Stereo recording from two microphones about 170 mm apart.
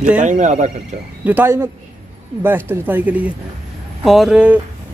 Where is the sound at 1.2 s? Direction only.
10° right (ahead or behind).